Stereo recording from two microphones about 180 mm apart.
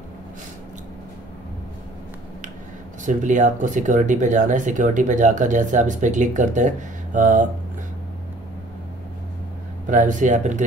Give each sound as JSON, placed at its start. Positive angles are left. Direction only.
{"t": 3.1, "sound": "speech", "side_deg": -45}
{"t": 9.8, "sound": "speech", "side_deg": -45}